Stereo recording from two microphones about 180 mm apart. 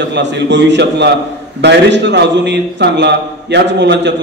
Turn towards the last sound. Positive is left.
turn(degrees=-70)  # may be behind; listen again after turning